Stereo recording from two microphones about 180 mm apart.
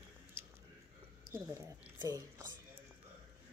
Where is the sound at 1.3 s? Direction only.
15° right (ahead or behind).